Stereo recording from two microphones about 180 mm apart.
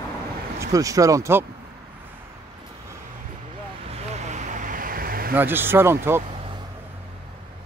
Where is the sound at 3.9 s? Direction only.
40° right (ahead or behind).